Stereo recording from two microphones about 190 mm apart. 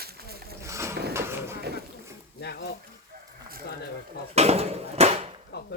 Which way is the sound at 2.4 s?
60° left (ahead or behind).